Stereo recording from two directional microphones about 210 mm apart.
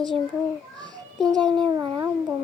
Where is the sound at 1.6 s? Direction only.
20° right (ahead or behind).